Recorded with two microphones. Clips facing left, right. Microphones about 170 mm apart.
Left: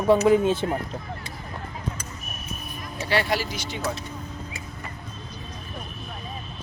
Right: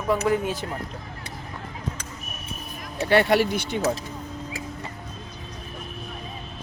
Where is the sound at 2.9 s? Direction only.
55° right (ahead or behind).